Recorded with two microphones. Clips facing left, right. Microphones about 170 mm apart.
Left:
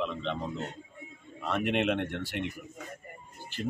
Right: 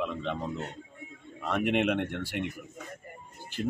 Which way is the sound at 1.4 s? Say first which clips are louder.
Right 1 dB; 10° right (ahead or behind).